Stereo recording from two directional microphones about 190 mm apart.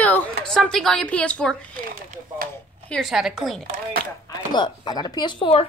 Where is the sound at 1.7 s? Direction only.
50° right (ahead or behind).